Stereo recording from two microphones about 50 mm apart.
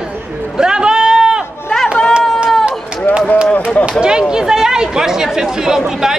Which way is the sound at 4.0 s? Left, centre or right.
Centre.